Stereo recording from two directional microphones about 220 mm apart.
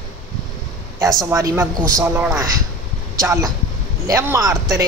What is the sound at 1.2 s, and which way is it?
Speech, 15° right (ahead or behind).